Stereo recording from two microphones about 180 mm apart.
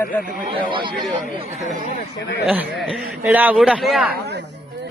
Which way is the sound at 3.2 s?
10° right (ahead or behind).